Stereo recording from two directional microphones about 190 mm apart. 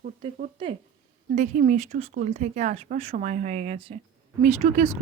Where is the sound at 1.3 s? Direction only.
40° right (ahead or behind).